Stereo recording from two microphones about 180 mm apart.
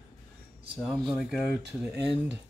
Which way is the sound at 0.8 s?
Centre (ahead or behind).